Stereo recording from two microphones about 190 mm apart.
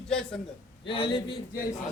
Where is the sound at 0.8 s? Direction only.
25° left (ahead or behind).